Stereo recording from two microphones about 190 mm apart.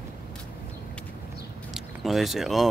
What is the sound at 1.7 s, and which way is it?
Speech, centre (ahead or behind).